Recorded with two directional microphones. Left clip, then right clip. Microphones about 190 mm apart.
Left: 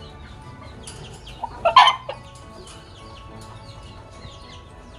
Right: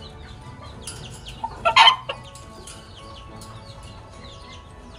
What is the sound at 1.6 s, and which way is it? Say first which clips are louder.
Chicken: left 1 dB; 25° left (ahead or behind).